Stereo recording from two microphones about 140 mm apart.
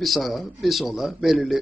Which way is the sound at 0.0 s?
Centre (ahead or behind).